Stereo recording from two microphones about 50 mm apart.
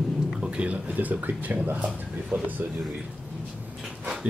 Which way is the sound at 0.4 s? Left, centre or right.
Right.